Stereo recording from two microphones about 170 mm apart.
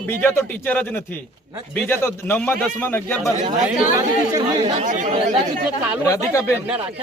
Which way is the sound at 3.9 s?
20° right (ahead or behind).